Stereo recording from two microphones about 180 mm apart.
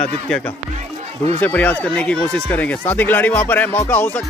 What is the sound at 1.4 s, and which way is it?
Speech, 10° left (ahead or behind).